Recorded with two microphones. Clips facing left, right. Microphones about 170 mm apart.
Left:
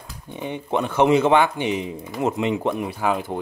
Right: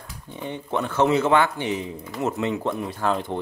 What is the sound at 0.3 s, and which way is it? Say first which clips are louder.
Speech: left 3 dB; 15° left (ahead or behind).